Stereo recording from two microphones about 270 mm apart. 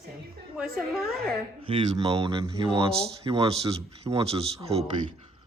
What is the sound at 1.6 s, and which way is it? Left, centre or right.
Speech, centre.